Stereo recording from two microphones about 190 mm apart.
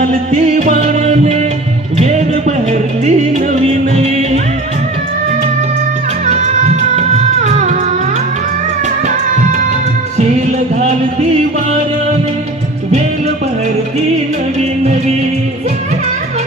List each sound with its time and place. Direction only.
0.0 s music: 40° right (ahead or behind)
6.2 s music: 35° right (ahead or behind)